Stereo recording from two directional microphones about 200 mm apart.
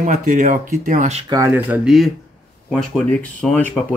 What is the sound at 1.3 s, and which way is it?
Speech, 10° right (ahead or behind).